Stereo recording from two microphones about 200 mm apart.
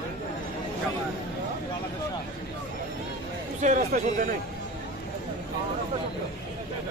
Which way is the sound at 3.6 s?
40° right (ahead or behind).